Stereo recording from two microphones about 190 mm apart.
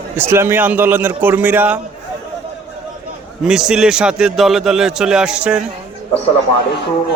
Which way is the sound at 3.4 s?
5° right (ahead or behind).